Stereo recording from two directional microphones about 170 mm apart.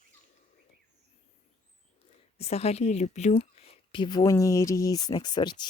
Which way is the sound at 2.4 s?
40° left (ahead or behind).